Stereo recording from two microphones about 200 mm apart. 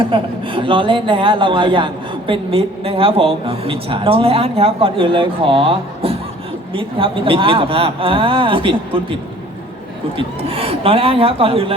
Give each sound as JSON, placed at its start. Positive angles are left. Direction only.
{"t": 0.1, "sound": "a man's voice", "side_deg": -25}
{"t": 10.2, "sound": "a man's voice", "side_deg": -25}